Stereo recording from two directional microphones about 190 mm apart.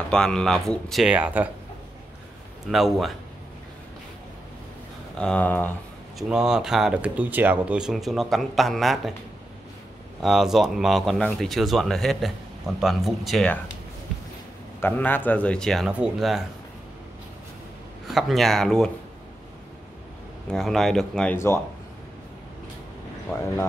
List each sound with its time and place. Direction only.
0.1 s speech: 5° left (ahead or behind)
2.7 s speech: centre (ahead or behind)
5.1 s speech: 5° left (ahead or behind)
6.1 s speech: 5° right (ahead or behind)
10.2 s speech: centre (ahead or behind)
14.8 s speech: 10° left (ahead or behind)
18.0 s speech: centre (ahead or behind)
20.4 s speech: centre (ahead or behind)
23.3 s speech: 15° left (ahead or behind)